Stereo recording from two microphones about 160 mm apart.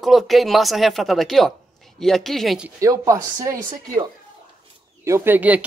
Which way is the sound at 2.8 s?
20° right (ahead or behind).